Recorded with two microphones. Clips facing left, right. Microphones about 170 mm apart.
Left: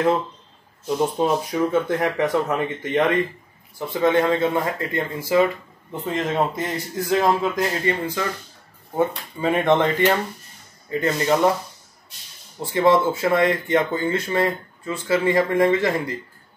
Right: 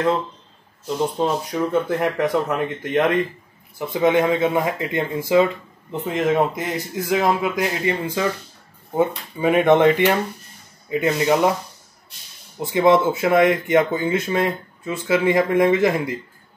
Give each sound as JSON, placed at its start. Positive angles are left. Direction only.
{"t": 0.8, "sound": "speech", "side_deg": 5}
{"t": 3.9, "sound": "speech", "side_deg": -15}
{"t": 12.5, "sound": "speech", "side_deg": -15}